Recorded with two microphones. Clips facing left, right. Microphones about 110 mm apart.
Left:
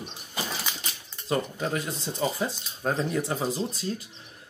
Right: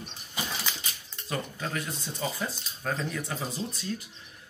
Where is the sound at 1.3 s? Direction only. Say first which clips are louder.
Left 6 dB; 30° left (ahead or behind).